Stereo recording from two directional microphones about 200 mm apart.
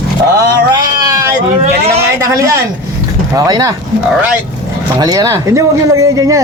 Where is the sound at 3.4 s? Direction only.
15° right (ahead or behind).